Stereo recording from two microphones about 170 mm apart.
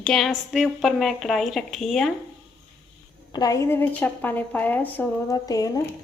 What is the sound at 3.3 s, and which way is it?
A woman's voice, 20° left (ahead or behind).